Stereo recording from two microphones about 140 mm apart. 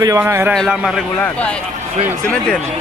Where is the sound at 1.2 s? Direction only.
10° left (ahead or behind).